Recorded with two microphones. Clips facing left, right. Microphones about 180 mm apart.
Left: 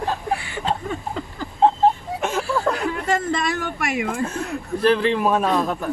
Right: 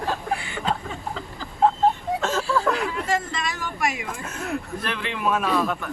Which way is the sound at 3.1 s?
55° left (ahead or behind).